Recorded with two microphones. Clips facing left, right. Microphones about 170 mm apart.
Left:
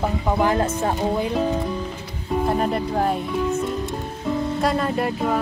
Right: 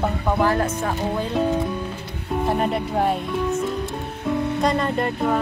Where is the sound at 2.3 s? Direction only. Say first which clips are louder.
Left 1 dB; centre (ahead or behind).